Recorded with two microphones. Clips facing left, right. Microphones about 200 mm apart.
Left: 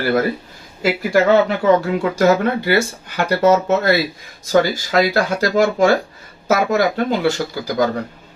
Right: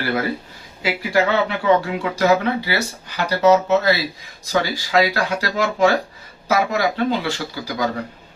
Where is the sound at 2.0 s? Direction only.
45° left (ahead or behind).